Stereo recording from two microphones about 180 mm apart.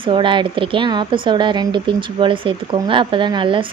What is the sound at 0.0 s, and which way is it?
Speech, 25° right (ahead or behind).